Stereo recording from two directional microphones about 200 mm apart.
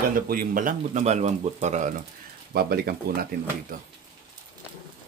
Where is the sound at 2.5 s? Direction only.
50° right (ahead or behind).